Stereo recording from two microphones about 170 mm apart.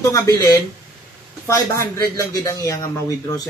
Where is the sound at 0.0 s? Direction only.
15° left (ahead or behind).